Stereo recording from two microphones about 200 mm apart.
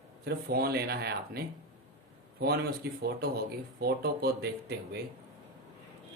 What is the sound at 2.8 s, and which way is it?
Speech, 55° right (ahead or behind).